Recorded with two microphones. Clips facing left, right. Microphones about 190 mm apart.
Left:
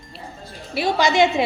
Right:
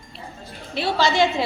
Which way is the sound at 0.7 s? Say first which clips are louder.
Left 2 dB; 15° left (ahead or behind).